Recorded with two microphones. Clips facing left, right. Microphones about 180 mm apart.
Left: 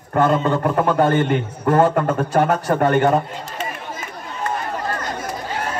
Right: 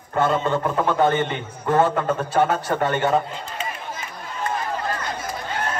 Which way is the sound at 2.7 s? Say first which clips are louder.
Left 5 dB; 45° left (ahead or behind).